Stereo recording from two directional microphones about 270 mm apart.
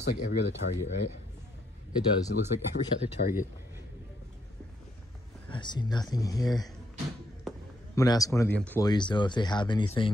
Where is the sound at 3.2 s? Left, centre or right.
Left.